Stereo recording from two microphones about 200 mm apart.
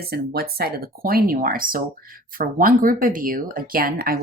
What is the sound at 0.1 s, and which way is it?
Speech, 50° right (ahead or behind).